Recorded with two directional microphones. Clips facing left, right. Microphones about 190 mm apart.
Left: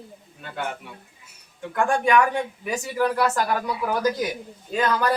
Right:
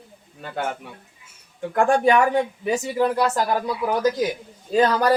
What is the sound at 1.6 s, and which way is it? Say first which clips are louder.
Speech: right 4 dB; 35° right (ahead or behind).